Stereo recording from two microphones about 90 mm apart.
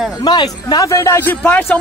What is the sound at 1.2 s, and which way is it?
Speech, 20° left (ahead or behind).